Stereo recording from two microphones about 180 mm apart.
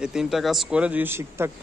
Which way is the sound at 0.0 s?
5° right (ahead or behind).